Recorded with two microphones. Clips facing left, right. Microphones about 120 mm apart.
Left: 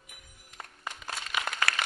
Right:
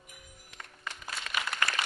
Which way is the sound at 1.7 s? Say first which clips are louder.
Left 1 dB; 70° left (ahead or behind).